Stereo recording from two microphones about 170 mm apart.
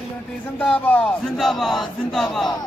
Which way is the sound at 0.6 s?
10° left (ahead or behind).